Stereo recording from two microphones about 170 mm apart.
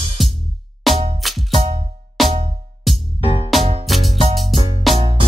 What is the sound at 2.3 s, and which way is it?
Music, 25° right (ahead or behind).